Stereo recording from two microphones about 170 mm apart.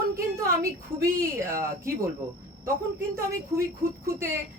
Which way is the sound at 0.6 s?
15° right (ahead or behind).